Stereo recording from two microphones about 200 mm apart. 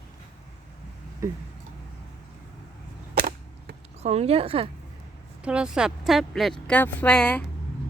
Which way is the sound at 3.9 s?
30° right (ahead or behind).